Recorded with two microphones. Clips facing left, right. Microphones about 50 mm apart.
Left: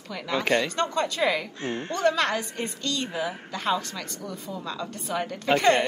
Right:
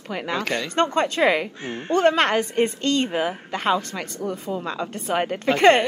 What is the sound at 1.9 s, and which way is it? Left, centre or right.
A woman's voice, right.